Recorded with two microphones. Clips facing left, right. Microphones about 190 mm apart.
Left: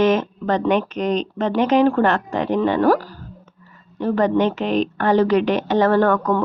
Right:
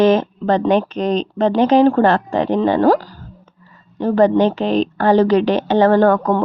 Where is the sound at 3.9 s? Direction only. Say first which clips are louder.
Right 4 dB; 35° right (ahead or behind).